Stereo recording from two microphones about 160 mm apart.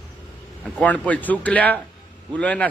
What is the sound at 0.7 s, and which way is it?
A man's voice, 10° left (ahead or behind).